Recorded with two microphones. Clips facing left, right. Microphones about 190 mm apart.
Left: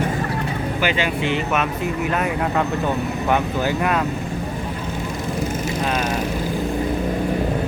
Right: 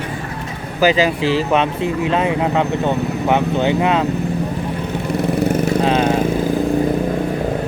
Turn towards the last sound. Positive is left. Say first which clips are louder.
# right 7 dB
turn(degrees=-30)  # may be behind; listen again after turning